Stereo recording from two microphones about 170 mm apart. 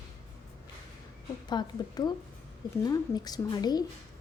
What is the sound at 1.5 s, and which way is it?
A woman's voice, 25° left (ahead or behind).